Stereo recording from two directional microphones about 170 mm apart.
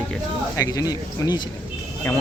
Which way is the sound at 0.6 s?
20° left (ahead or behind).